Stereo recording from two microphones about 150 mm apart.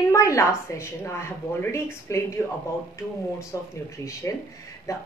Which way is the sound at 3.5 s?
20° left (ahead or behind).